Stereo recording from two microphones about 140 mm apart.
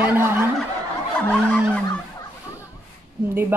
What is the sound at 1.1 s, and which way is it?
Music, 5° left (ahead or behind).